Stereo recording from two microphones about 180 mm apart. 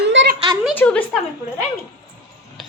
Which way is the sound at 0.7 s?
10° left (ahead or behind).